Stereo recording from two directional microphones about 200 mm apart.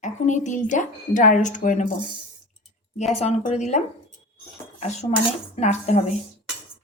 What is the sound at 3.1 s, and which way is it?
Speech, 35° left (ahead or behind).